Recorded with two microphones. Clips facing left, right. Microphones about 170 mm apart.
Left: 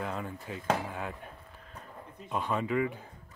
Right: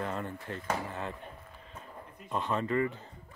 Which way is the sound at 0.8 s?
5° left (ahead or behind).